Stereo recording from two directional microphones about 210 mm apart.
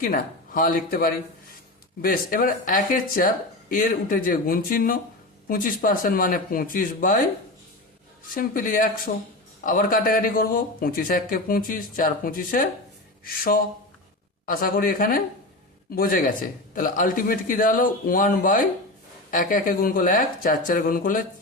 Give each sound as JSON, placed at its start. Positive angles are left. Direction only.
{"t": 0.0, "sound": "a man's voice", "side_deg": 40}
{"t": 8.3, "sound": "a man's voice", "side_deg": 40}